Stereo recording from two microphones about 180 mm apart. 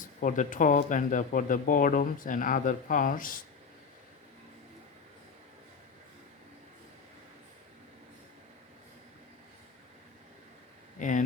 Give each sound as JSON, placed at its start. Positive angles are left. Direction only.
{"t": 0.0, "sound": "speech", "side_deg": 45}
{"t": 11.0, "sound": "speech", "side_deg": 45}